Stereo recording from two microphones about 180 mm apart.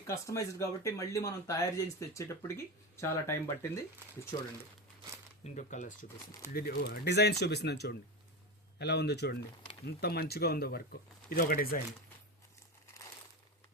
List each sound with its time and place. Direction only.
0.1 s speech: 15° left (ahead or behind)
5.4 s speech: 40° left (ahead or behind)
6.5 s speech: 55° left (ahead or behind)